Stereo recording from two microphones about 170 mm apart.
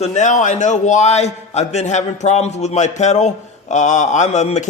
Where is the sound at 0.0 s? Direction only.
45° left (ahead or behind).